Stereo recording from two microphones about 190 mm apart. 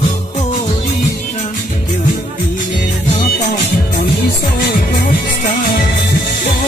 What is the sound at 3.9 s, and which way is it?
Music, 55° left (ahead or behind).